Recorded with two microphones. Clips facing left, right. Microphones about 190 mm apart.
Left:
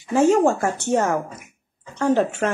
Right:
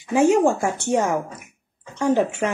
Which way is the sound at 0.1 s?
15° right (ahead or behind).